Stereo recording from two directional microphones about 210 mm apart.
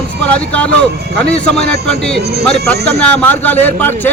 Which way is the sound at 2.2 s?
50° right (ahead or behind).